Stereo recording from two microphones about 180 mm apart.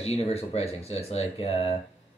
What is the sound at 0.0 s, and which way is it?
Speech, 35° left (ahead or behind).